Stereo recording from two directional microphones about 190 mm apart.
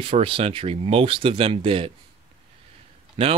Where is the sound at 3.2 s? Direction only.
30° right (ahead or behind).